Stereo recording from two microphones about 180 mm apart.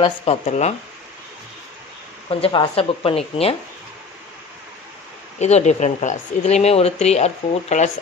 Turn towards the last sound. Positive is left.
turn(degrees=40)  # may be behind; listen again after turning